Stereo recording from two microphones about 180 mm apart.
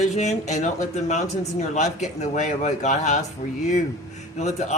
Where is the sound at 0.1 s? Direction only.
40° left (ahead or behind).